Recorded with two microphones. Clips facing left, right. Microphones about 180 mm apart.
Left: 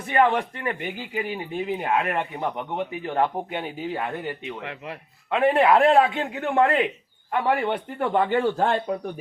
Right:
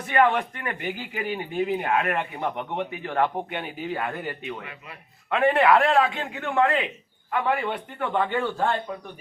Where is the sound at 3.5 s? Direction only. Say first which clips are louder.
Left 1 dB; 25° left (ahead or behind).